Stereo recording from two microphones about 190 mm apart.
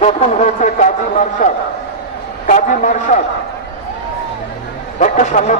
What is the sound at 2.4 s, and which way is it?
Speech, 40° left (ahead or behind).